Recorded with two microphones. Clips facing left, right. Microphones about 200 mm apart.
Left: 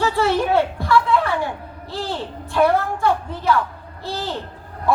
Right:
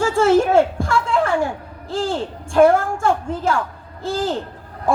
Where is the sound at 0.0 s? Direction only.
45° right (ahead or behind).